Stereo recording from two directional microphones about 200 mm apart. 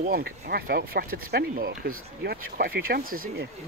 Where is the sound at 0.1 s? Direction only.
50° right (ahead or behind).